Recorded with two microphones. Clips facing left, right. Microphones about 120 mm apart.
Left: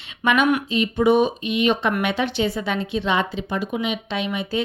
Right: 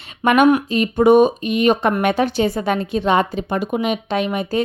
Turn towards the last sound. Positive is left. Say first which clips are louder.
# right 5 dB
turn(degrees=-45)  # may be behind; listen again after turning